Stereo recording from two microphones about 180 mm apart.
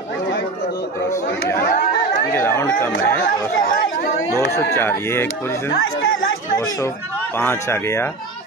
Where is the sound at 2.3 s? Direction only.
10° left (ahead or behind).